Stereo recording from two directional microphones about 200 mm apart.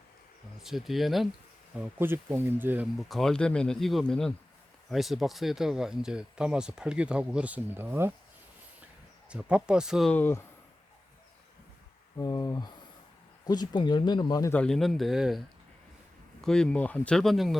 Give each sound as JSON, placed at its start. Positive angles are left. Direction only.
{"t": 0.6, "sound": "speech", "side_deg": 0}
{"t": 9.3, "sound": "speech", "side_deg": -5}
{"t": 12.1, "sound": "speech", "side_deg": 15}
{"t": 14.5, "sound": "speech", "side_deg": 5}